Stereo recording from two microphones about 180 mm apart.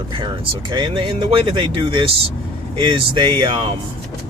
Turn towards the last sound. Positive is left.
turn(degrees=-25)  # may be behind; listen again after turning